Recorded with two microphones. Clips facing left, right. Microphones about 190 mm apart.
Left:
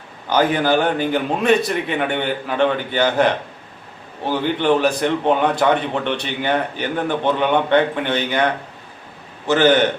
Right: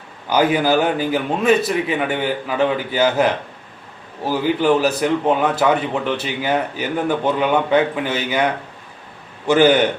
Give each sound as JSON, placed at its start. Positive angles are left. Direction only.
{"t": 0.3, "sound": "a man's voice", "side_deg": -10}
{"t": 9.5, "sound": "a man's voice", "side_deg": -10}